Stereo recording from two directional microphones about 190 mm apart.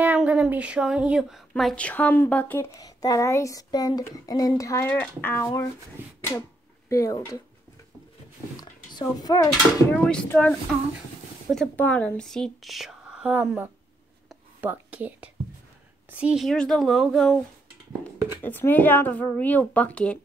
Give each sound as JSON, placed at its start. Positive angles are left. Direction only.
{"t": 0.0, "sound": "speech", "side_deg": -5}
{"t": 6.0, "sound": "beatboxing", "side_deg": -10}
{"t": 6.9, "sound": "speech", "side_deg": 15}
{"t": 8.5, "sound": "speech", "side_deg": 20}
{"t": 9.9, "sound": "speech", "side_deg": 5}
{"t": 11.5, "sound": "speech", "side_deg": 5}
{"t": 14.3, "sound": "whispering", "side_deg": -5}
{"t": 16.1, "sound": "speech", "side_deg": -5}
{"t": 18.4, "sound": "speech", "side_deg": 10}